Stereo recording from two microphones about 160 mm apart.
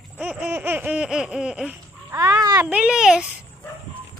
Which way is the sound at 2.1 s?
20° right (ahead or behind).